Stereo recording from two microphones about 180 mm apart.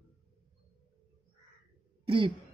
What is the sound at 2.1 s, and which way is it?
Throat clearing, 30° right (ahead or behind).